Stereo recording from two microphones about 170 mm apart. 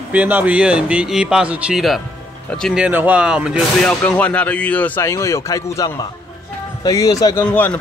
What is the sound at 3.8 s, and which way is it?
Speech, 10° left (ahead or behind).